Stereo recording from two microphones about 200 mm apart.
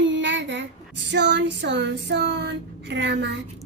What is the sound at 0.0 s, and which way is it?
Child singing, 65° right (ahead or behind).